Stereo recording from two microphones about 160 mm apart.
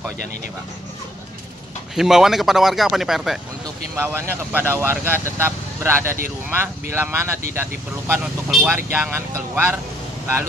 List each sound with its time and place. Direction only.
2.0 s speech: 5° right (ahead or behind)
3.9 s speech: 15° right (ahead or behind)